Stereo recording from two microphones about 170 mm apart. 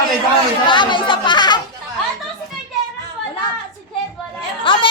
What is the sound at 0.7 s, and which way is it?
Chatter, 30° left (ahead or behind).